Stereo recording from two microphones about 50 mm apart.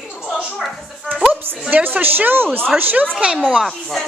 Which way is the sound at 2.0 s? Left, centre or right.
Right.